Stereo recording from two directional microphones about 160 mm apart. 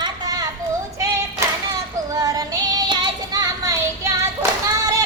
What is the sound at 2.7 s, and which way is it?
Child singing, 25° right (ahead or behind).